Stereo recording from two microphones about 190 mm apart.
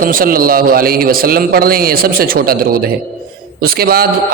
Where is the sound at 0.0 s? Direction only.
50° right (ahead or behind).